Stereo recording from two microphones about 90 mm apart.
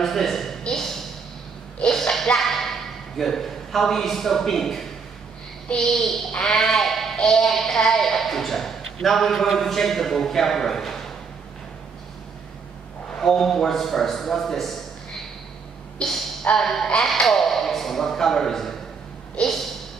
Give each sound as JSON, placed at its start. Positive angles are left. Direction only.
{"t": 0.0, "sound": "a man's voice", "side_deg": 0}
{"t": 1.8, "sound": "a sound", "side_deg": 10}
{"t": 5.7, "sound": "speech", "side_deg": 5}
{"t": 13.2, "sound": "speech", "side_deg": 5}
{"t": 16.0, "sound": "speech", "side_deg": 5}
{"t": 19.3, "sound": "a sound", "side_deg": 5}